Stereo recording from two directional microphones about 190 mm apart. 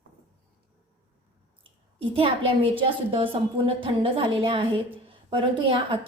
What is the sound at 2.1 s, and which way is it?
A woman's voice, 30° right (ahead or behind).